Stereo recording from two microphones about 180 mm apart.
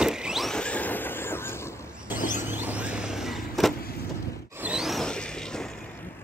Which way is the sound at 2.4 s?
10° right (ahead or behind).